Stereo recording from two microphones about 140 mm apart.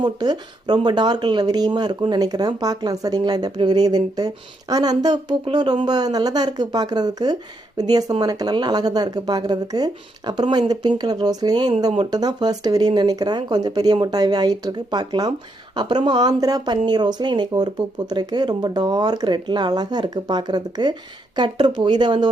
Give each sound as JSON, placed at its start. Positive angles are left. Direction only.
{"t": 0.0, "sound": "speech", "side_deg": -30}